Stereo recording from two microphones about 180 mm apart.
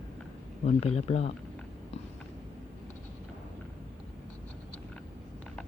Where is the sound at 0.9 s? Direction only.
35° left (ahead or behind).